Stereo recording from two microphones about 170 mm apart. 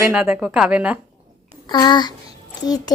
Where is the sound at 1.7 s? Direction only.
25° left (ahead or behind).